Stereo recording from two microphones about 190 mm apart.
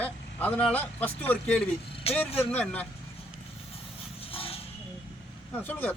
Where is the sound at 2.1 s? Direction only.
30° left (ahead or behind).